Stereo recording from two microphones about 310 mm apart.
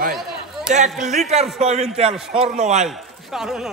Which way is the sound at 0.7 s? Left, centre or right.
Right.